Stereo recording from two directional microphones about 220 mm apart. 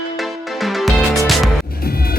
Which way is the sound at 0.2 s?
Centre (ahead or behind).